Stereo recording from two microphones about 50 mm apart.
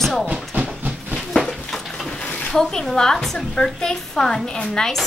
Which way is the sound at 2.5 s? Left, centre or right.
Centre.